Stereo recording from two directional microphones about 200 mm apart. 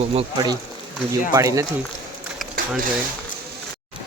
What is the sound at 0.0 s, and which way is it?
Speech, 30° right (ahead or behind).